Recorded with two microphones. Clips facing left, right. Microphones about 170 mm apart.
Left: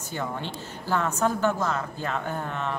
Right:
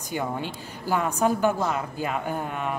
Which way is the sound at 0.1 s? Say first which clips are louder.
Right 3 dB; 10° right (ahead or behind).